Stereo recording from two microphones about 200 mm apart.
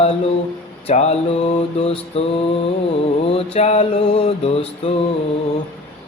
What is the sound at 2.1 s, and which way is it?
Mantra, 30° left (ahead or behind).